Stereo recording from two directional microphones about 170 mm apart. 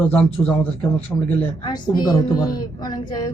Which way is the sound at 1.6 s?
25° left (ahead or behind).